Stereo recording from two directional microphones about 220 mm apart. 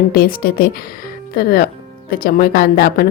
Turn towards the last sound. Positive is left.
turn(degrees=40)  # may be behind; listen again after turning